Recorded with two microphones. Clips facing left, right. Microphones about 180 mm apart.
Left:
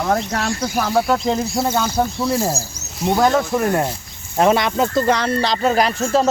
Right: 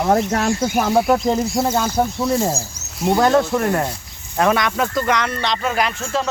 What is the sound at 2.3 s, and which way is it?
Speech, 10° left (ahead or behind).